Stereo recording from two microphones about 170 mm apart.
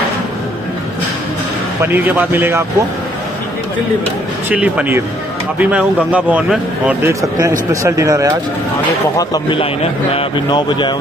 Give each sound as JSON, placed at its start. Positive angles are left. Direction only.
{"t": 1.8, "sound": "a man's voice", "side_deg": -10}
{"t": 4.5, "sound": "a man's voice", "side_deg": -10}
{"t": 9.1, "sound": "speech", "side_deg": 20}